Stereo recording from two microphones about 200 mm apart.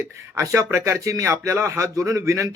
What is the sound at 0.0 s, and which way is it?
Speech, 15° right (ahead or behind).